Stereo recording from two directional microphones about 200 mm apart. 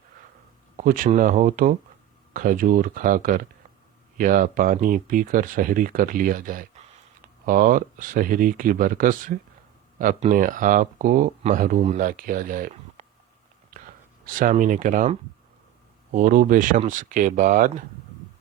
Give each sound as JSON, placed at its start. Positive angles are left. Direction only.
{"t": 0.8, "sound": "speech", "side_deg": -40}
{"t": 16.1, "sound": "speech", "side_deg": -40}